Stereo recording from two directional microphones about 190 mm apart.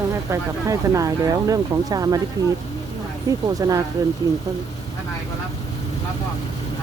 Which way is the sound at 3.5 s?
20° right (ahead or behind).